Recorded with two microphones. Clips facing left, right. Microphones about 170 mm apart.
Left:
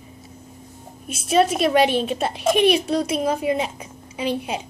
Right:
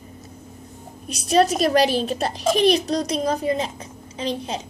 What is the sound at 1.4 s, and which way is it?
Speech, 40° right (ahead or behind).